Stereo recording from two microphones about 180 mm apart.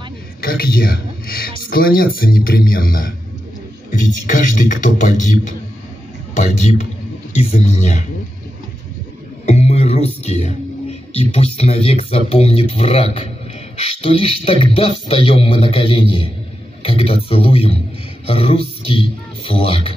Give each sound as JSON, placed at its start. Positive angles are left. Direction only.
{"t": 0.4, "sound": "a man's voice", "side_deg": 55}
{"t": 9.5, "sound": "a man's voice", "side_deg": 35}